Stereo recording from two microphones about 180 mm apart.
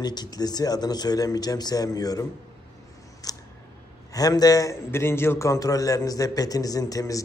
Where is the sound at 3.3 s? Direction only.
20° left (ahead or behind).